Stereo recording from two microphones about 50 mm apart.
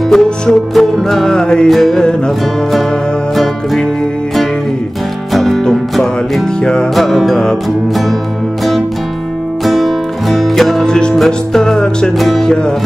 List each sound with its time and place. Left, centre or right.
0.1 s music: centre
1.7 s music: centre
5.3 s music: centre
6.6 s music: centre
7.0 s music: centre
9.7 s music: centre
10.9 s music: centre
12.2 s music: centre